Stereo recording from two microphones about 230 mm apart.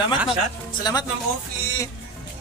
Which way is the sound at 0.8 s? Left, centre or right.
Centre.